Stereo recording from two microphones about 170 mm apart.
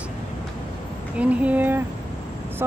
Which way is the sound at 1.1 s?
10° right (ahead or behind).